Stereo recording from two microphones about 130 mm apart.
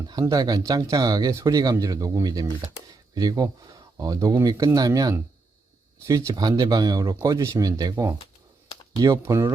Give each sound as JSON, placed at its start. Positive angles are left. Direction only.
{"t": 0.1, "sound": "speech", "side_deg": -30}